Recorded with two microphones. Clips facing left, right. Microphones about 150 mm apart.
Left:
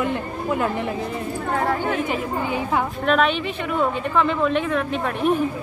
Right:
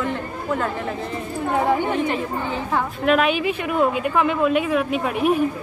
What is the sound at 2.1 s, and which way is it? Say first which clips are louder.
Speech: left 1 dB; 10° left (ahead or behind).